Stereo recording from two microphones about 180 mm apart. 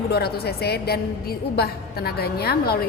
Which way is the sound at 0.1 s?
60° left (ahead or behind).